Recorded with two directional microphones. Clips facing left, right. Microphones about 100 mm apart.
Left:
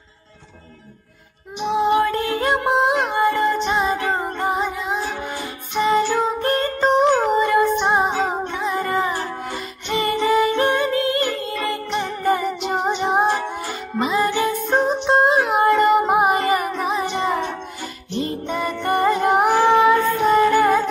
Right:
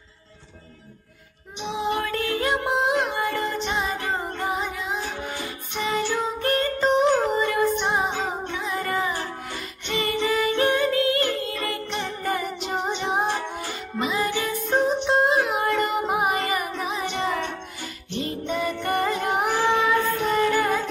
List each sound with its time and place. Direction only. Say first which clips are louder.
1.6 s music: left 9 dB; 45° left (ahead or behind)
1.9 s music: left 5 dB; 30° left (ahead or behind)
18.1 s music: left 3 dB; 40° left (ahead or behind)